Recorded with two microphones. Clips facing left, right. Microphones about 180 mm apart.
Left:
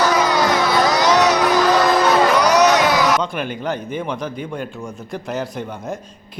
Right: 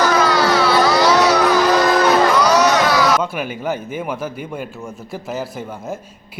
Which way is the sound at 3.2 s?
5° right (ahead or behind).